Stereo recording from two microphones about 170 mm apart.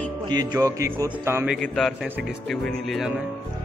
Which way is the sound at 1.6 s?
Centre (ahead or behind).